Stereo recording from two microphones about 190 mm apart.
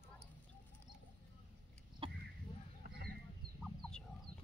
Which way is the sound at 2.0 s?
25° right (ahead or behind).